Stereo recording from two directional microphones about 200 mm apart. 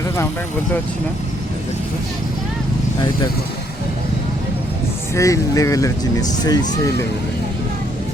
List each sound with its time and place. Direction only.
5.1 s speech: 15° left (ahead or behind)